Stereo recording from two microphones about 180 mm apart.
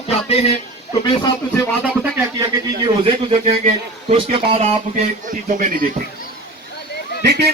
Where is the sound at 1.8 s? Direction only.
5° right (ahead or behind).